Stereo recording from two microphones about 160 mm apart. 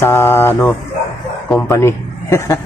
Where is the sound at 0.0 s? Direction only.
15° left (ahead or behind).